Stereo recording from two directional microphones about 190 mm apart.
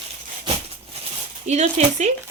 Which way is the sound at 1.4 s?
35° right (ahead or behind).